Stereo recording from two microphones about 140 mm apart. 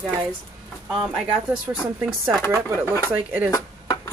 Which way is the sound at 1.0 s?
5° right (ahead or behind).